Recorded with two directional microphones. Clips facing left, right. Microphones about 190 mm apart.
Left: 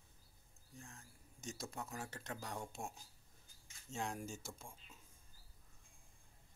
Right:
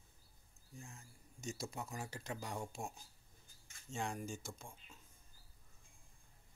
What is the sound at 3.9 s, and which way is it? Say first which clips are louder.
Speech: right 1 dB; centre (ahead or behind).